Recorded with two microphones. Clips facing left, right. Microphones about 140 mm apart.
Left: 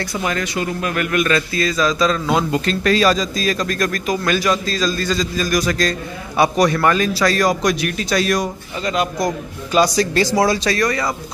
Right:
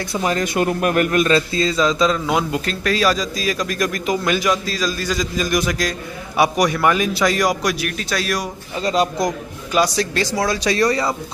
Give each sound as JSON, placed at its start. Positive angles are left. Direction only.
{"t": 0.1, "sound": "speech", "side_deg": -30}
{"t": 0.6, "sound": "speech", "side_deg": -55}
{"t": 0.9, "sound": "a man's voice", "side_deg": -40}
{"t": 8.8, "sound": "speech", "side_deg": -35}
{"t": 9.7, "sound": "speech", "side_deg": -5}
{"t": 10.8, "sound": "a man's voice", "side_deg": -30}